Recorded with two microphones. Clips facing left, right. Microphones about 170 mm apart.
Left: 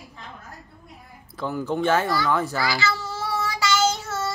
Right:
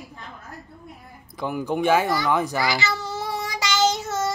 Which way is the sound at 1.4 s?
15° right (ahead or behind).